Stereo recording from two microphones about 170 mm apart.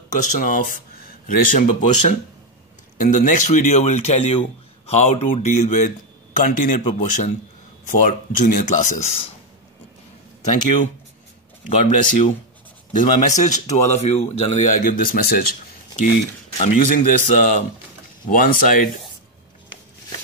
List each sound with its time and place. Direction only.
0.2 s a man's voice: 50° left (ahead or behind)
10.4 s speech: 45° left (ahead or behind)
12.0 s speech: 50° left (ahead or behind)
16.5 s speech: 50° left (ahead or behind)